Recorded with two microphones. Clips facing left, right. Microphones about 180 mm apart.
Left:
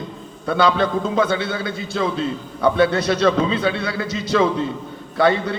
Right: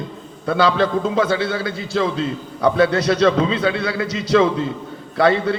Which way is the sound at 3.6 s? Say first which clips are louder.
Right 2 dB; 25° left (ahead or behind).